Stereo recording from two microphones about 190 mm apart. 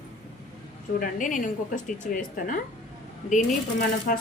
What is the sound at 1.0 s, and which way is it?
A woman's voice, 45° left (ahead or behind).